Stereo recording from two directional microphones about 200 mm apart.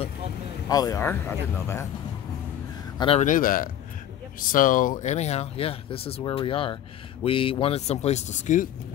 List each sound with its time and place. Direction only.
0.7 s speech: 20° left (ahead or behind)
3.0 s a man's voice: 30° left (ahead or behind)
3.3 s a man's voice: 45° left (ahead or behind)